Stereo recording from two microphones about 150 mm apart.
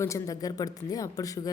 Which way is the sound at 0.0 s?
20° left (ahead or behind).